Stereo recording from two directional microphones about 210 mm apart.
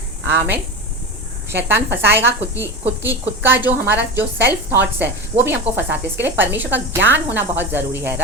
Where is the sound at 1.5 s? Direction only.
55° right (ahead or behind).